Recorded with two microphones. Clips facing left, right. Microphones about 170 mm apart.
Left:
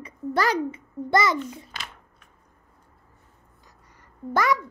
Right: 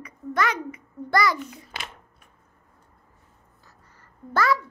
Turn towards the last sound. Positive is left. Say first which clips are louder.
# even
turn(degrees=15)  # may be behind; listen again after turning